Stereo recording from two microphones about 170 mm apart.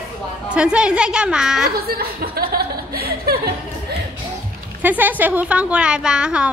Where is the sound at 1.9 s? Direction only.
60° right (ahead or behind).